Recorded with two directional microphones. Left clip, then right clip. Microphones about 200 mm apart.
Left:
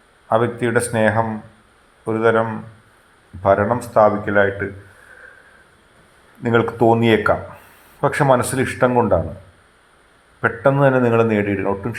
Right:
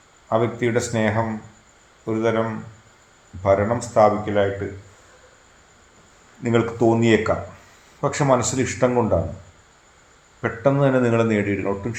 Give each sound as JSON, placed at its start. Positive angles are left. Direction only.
{"t": 0.3, "sound": "a man's voice", "side_deg": 15}
{"t": 6.4, "sound": "a man's voice", "side_deg": 20}
{"t": 10.4, "sound": "a man's voice", "side_deg": 15}